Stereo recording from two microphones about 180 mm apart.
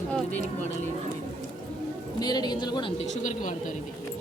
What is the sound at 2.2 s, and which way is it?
Speech, 20° left (ahead or behind).